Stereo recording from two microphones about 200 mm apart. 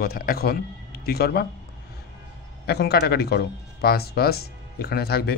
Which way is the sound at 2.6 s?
55° left (ahead or behind).